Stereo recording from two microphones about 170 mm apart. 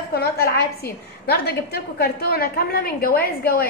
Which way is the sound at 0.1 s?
65° left (ahead or behind).